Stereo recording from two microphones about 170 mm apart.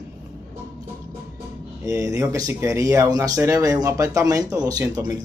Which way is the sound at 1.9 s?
20° right (ahead or behind).